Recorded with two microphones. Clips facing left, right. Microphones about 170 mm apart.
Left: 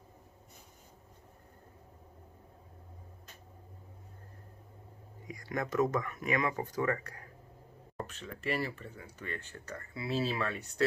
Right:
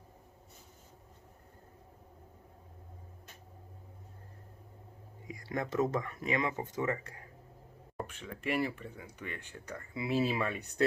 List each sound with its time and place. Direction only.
5.3 s speech: 30° right (ahead or behind)
7.9 s speech: 10° right (ahead or behind)